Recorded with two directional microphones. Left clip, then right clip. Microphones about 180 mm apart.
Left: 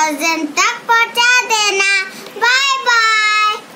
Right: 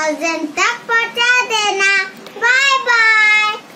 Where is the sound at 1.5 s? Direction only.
30° left (ahead or behind).